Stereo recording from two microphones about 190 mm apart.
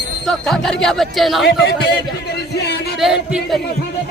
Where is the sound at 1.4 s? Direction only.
60° left (ahead or behind).